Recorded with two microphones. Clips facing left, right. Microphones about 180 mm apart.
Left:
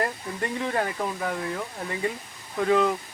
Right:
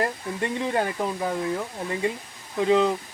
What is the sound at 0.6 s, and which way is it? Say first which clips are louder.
Speech: right 2 dB; 20° right (ahead or behind).